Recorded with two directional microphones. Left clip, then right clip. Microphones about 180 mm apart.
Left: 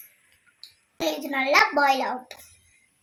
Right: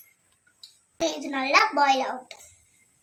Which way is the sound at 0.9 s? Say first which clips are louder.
Left 1 dB; 50° left (ahead or behind).